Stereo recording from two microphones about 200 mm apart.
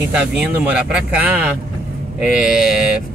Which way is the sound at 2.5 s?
Centre (ahead or behind).